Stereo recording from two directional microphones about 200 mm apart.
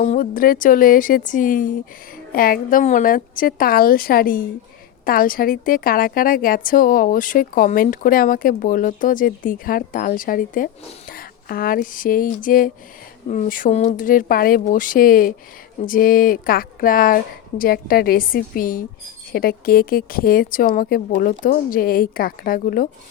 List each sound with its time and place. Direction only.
0.0 s a woman's voice: 45° left (ahead or behind)